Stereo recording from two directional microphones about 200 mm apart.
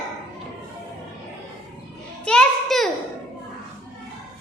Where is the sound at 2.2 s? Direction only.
5° left (ahead or behind).